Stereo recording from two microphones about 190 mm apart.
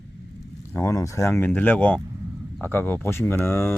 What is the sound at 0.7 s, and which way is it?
Speech, 15° left (ahead or behind).